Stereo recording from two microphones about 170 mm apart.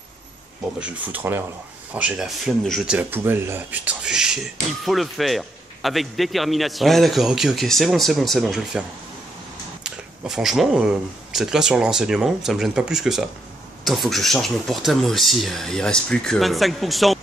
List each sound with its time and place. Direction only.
0.7 s a man's voice: 10° right (ahead or behind)
9.8 s a man's voice: 5° right (ahead or behind)